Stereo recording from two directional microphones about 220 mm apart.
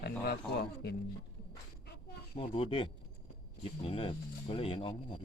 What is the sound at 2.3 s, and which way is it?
A man's voice, 25° left (ahead or behind).